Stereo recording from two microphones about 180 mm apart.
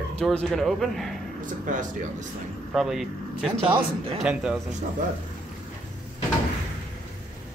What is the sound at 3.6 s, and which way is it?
Speech, 30° right (ahead or behind).